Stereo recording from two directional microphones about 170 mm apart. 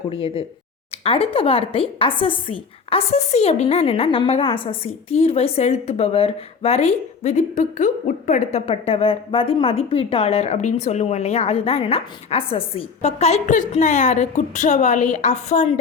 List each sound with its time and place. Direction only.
0.1 s a woman's voice: 35° left (ahead or behind)
8.5 s a woman's voice: 35° left (ahead or behind)